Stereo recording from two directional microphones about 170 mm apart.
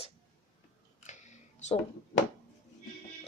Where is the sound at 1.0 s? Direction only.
45° left (ahead or behind).